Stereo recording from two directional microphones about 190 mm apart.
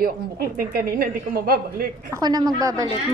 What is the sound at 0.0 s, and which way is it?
A woman's voice, 50° right (ahead or behind).